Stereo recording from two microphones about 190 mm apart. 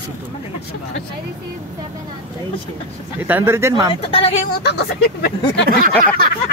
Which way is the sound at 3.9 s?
30° left (ahead or behind).